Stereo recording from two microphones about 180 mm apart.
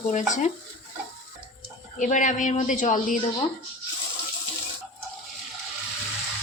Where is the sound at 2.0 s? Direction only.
45° left (ahead or behind).